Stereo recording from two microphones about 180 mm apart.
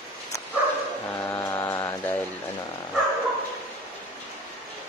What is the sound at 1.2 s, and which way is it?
Mantra, 10° left (ahead or behind).